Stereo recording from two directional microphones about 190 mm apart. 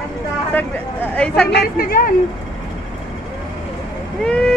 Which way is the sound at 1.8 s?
50° left (ahead or behind).